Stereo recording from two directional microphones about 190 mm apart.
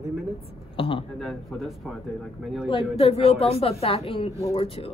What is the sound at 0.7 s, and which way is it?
Speech, 25° left (ahead or behind).